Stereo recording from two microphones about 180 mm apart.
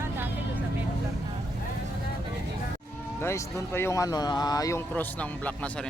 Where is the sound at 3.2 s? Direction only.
15° left (ahead or behind).